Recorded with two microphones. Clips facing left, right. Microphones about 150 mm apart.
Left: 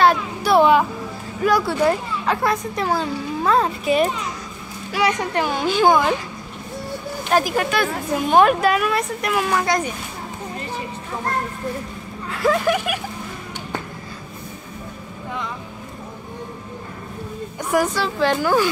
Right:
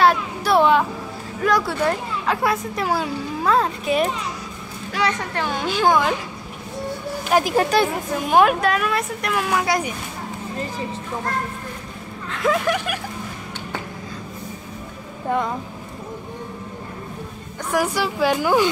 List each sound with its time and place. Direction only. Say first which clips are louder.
0.0 s a sound: left 1 dB; centre (ahead or behind)
1.4 s speech: left 2 dB; 5° left (ahead or behind)
4.9 s speech: left 3 dB; 15° left (ahead or behind)
5.5 s speech: left 2 dB; centre (ahead or behind)
7.4 s speech: right 3 dB; 30° right (ahead or behind)
8.3 s speech: left 1 dB; 5° right (ahead or behind)
12.3 s speech: left 2 dB; centre (ahead or behind)
15.2 s speech: right 8 dB; 50° right (ahead or behind)
17.7 s a woman's voice: left 1 dB; 10° right (ahead or behind)